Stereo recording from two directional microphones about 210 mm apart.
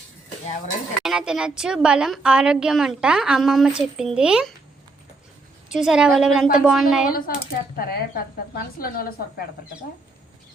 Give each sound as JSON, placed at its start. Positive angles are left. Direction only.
{"t": 1.0, "sound": "a woman's voice", "side_deg": -5}
{"t": 5.7, "sound": "a woman's voice", "side_deg": 0}
{"t": 7.1, "sound": "speech", "side_deg": 45}